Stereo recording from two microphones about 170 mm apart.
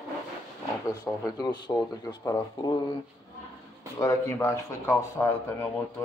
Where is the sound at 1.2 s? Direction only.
20° left (ahead or behind).